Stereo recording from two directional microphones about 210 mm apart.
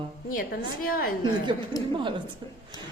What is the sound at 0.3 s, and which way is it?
Speech, 45° left (ahead or behind).